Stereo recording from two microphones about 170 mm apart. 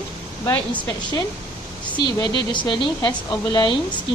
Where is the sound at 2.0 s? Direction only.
25° left (ahead or behind).